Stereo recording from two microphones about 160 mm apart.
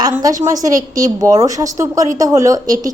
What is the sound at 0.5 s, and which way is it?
A woman's voice, 20° right (ahead or behind).